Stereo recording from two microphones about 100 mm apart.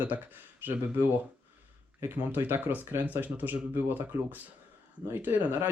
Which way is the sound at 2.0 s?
25° right (ahead or behind).